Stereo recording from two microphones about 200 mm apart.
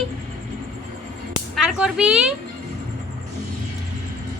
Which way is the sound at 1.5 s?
5° right (ahead or behind).